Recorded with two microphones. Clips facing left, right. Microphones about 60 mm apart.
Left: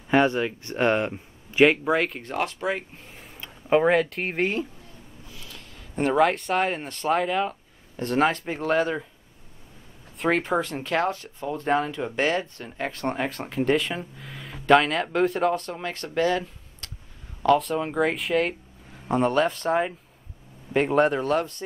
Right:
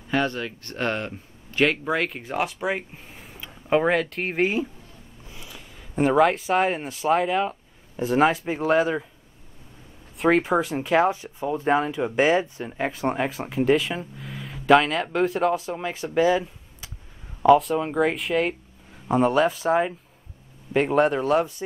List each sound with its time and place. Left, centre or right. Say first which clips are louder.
0.1 s speech: left 4 dB; left
1.9 s speech: left 1 dB; centre
5.3 s a sound: right 2 dB; centre
5.9 s speech: right 2 dB; centre
10.1 s speech: right 3 dB; centre